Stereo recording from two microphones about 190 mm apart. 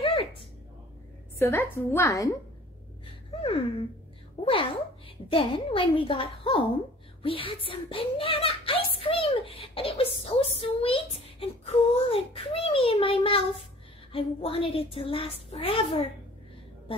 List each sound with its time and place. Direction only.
0.0 s a sound: 30° left (ahead or behind)
1.4 s a woman's voice: 10° left (ahead or behind)
4.5 s a woman's voice: 30° left (ahead or behind)